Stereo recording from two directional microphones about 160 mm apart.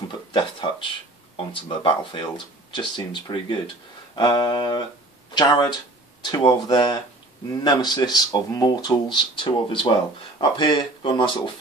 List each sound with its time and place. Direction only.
0.3 s speech: 30° left (ahead or behind)